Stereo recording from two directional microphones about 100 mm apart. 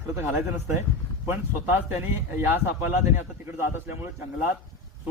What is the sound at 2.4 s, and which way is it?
Speech, 20° right (ahead or behind).